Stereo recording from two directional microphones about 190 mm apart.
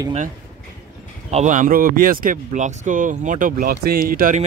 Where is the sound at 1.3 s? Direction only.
40° right (ahead or behind).